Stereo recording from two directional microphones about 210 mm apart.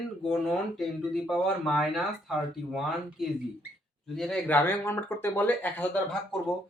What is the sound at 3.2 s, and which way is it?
Speech, centre (ahead or behind).